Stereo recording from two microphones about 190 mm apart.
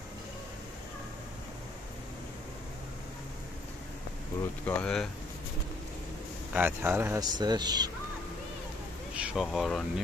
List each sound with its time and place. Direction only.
4.6 s speech: 5° left (ahead or behind)
6.5 s speech: 10° right (ahead or behind)
9.1 s speech: 5° right (ahead or behind)